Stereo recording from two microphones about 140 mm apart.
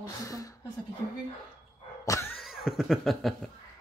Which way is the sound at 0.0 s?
25° left (ahead or behind).